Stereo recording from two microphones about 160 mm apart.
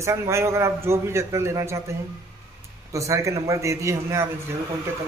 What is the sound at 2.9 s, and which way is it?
A man's voice, 20° right (ahead or behind).